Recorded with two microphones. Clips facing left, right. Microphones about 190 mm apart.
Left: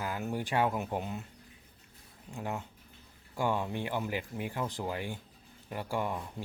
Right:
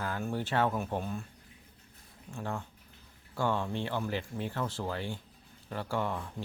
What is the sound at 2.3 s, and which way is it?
Speech, 15° left (ahead or behind).